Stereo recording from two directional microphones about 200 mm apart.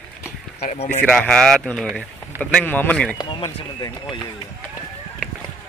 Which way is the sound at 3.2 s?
20° left (ahead or behind).